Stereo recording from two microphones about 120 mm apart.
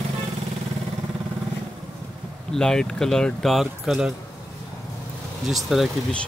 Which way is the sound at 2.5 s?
5° left (ahead or behind).